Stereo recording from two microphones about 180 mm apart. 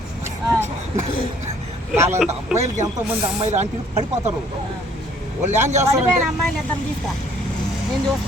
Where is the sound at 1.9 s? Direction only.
15° right (ahead or behind).